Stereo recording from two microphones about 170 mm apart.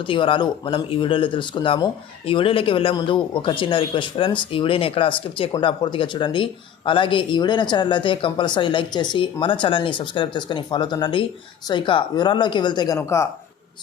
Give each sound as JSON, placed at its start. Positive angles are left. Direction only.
{"t": 0.1, "sound": "speech", "side_deg": 30}